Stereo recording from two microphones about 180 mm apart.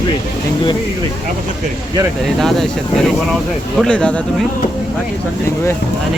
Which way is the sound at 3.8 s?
5° left (ahead or behind).